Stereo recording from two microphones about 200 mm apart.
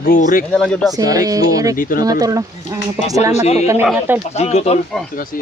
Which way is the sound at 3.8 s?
5° right (ahead or behind).